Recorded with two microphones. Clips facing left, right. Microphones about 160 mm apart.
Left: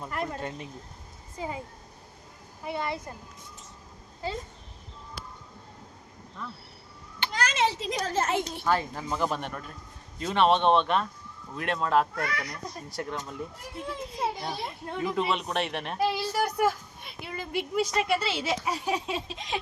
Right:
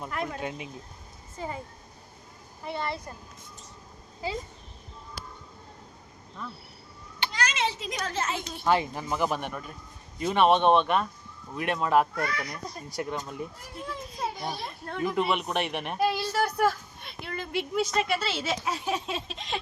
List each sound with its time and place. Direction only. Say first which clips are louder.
0.0 s speech: even; centre (ahead or behind)
1.4 s a woman's voice: left 1 dB; 10° left (ahead or behind)
2.6 s a woman's voice: left 1 dB; 10° left (ahead or behind)
7.3 s a sound: left 3 dB; 50° left (ahead or behind)
7.8 s speech: left 3 dB; 35° left (ahead or behind)
8.1 s a woman's voice: left 5 dB; 50° left (ahead or behind)
8.6 s speech: right 2 dB; 15° right (ahead or behind)
13.7 s a child's voice: left 2 dB; 25° left (ahead or behind)
15.3 s speech: right 1 dB; 5° right (ahead or behind)
16.0 s a woman's voice: right 1 dB; 5° left (ahead or behind)